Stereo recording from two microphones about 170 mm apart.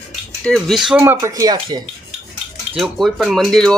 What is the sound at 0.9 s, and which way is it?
Speech, 10° right (ahead or behind).